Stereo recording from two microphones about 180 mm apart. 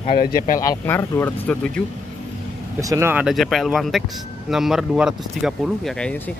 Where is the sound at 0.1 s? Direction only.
50° left (ahead or behind).